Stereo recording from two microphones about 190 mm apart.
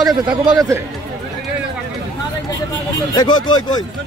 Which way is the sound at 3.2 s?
25° left (ahead or behind).